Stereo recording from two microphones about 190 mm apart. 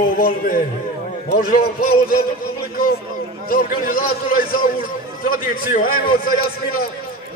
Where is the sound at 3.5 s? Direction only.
50° left (ahead or behind).